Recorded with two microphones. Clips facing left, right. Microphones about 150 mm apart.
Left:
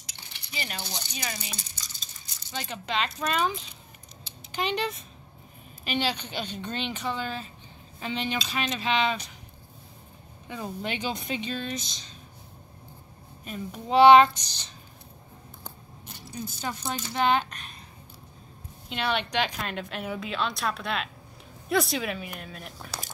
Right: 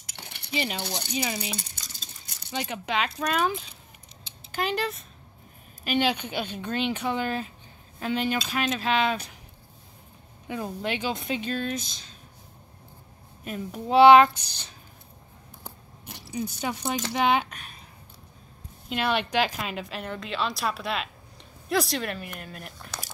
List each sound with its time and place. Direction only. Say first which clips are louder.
0.0 s cutlery: right 4 dB; 60° right (ahead or behind)
1.1 s speech: right 8 dB; 20° right (ahead or behind)
1.6 s a sound: right 3 dB; 60° right (ahead or behind)
2.7 s speech: even; 10° right (ahead or behind)
4.6 s a woman's voice: right 1 dB; 5° right (ahead or behind)
10.5 s a woman's voice: right 3 dB; centre (ahead or behind)
13.4 s a woman's voice: right 3 dB; 5° right (ahead or behind)
16.3 s speech: right 4 dB; 10° right (ahead or behind)
18.9 s a woman's voice: right 2 dB; 5° right (ahead or behind)